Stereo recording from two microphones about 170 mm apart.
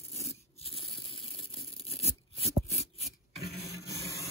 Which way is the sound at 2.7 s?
35° left (ahead or behind).